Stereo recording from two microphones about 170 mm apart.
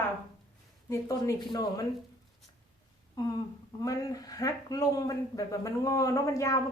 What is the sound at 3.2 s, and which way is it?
A woman's voice, 25° left (ahead or behind).